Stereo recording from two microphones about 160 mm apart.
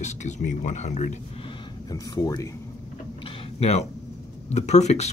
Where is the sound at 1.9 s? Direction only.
25° left (ahead or behind).